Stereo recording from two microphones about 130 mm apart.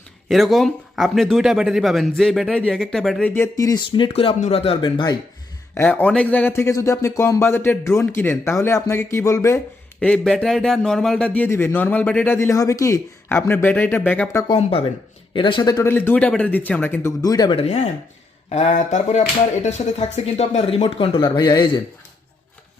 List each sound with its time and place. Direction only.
0.3 s speech: centre (ahead or behind)
3.2 s speech: 20° left (ahead or behind); by 4.4 s 45° left (ahead or behind)
4.4 s speech: 55° left (ahead or behind); by 5.1 s 40° left (ahead or behind)
5.7 s speech: 15° left (ahead or behind)
10.0 s speech: 10° left (ahead or behind)
14.6 s speech: 45° left (ahead or behind); by 15.9 s 30° left (ahead or behind)
15.9 s speech: 15° left (ahead or behind); by 17.6 s 30° left (ahead or behind)
17.6 s speech: 55° left (ahead or behind)
21.3 s speech: 35° left (ahead or behind)